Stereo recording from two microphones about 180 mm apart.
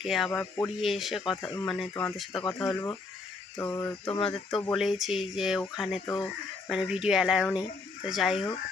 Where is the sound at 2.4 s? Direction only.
20° left (ahead or behind).